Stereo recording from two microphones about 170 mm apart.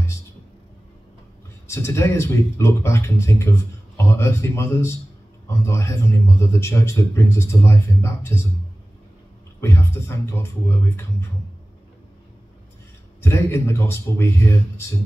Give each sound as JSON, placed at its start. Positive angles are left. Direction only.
{"t": 1.7, "sound": "a man's voice", "side_deg": 15}
{"t": 9.6, "sound": "a man's voice", "side_deg": 15}
{"t": 13.2, "sound": "a man's voice", "side_deg": 15}